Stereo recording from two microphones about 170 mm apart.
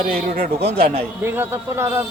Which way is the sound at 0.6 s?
35° right (ahead or behind).